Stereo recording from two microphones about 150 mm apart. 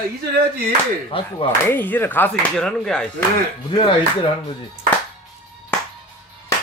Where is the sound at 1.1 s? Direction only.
35° left (ahead or behind).